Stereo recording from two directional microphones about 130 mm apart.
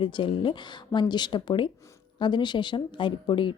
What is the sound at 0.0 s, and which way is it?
A woman's voice, 40° left (ahead or behind).